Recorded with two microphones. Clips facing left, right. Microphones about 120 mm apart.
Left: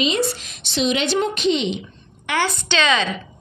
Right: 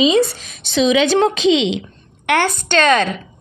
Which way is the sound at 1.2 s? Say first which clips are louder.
Right 6 dB; 90° right.